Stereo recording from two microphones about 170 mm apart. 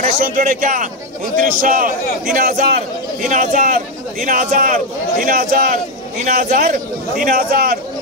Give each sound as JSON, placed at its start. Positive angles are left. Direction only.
{"t": 0.2, "sound": "a man's voice", "side_deg": -55}
{"t": 3.3, "sound": "a man's voice", "side_deg": -50}